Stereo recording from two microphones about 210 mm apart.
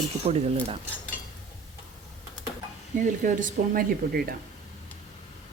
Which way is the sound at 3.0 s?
35° right (ahead or behind).